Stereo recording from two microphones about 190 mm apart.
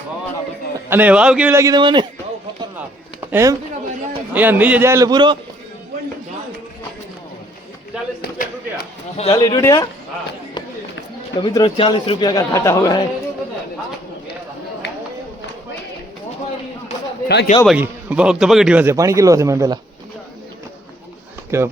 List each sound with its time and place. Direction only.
0.9 s a man's voice: 10° right (ahead or behind); by 2.0 s 25° right (ahead or behind)
3.3 s a man's voice: 15° right (ahead or behind)
8.2 s speech: 55° left (ahead or behind)
9.1 s speech: 35° left (ahead or behind)
9.4 s a man's voice: 15° left (ahead or behind)
11.3 s a man's voice: 25° left (ahead or behind)
17.2 s speech: 60° left (ahead or behind)
17.7 s a man's voice: 5° right (ahead or behind)
21.5 s a man's voice: 15° right (ahead or behind)